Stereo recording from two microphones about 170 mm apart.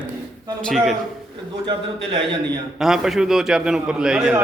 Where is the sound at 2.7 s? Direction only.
Centre (ahead or behind).